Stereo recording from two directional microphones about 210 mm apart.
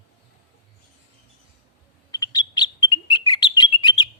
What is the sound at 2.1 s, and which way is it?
Bird, 20° left (ahead or behind).